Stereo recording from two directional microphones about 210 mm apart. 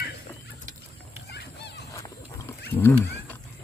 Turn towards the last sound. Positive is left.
turn(degrees=10)  # may be behind; listen again after turning